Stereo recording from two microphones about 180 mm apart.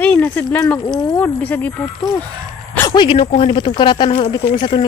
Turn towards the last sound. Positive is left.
turn(degrees=25)  # may be behind; listen again after turning